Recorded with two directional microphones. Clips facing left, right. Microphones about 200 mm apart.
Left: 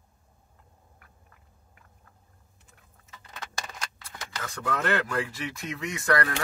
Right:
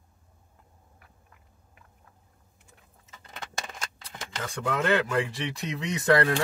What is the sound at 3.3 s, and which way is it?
Speech, 20° right (ahead or behind).